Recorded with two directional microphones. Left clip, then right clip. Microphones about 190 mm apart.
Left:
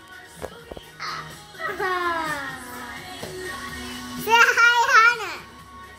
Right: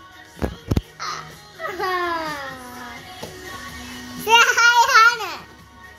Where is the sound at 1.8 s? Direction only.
50° right (ahead or behind).